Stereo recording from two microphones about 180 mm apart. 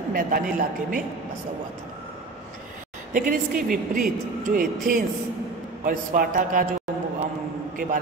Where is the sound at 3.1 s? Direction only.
50° right (ahead or behind).